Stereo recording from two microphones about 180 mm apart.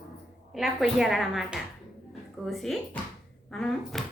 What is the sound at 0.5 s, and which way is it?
Speech, centre (ahead or behind).